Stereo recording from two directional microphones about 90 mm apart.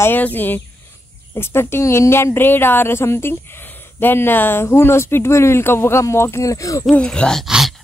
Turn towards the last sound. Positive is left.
turn(degrees=10)  # may be behind; listen again after turning